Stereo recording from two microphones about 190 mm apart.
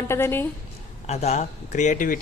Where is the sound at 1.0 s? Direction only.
35° left (ahead or behind).